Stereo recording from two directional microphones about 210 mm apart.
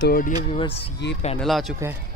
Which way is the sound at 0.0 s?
45° left (ahead or behind).